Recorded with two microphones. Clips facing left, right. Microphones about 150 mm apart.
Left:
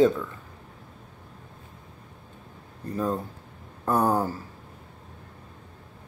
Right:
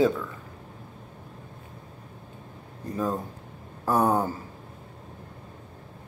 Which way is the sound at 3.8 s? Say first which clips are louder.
Even; centre (ahead or behind).